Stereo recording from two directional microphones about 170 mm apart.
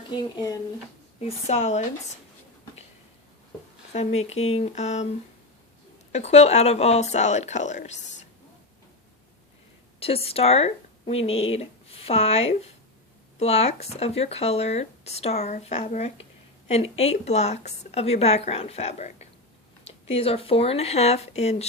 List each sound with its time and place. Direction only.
0.1 s speech: 25° left (ahead or behind)
1.5 s speech: 40° left (ahead or behind)
3.9 s speech: 40° left (ahead or behind)
6.1 s speech: 40° left (ahead or behind)
10.0 s speech: 35° left (ahead or behind)